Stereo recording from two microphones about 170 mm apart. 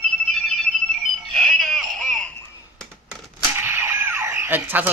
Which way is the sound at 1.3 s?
Centre (ahead or behind).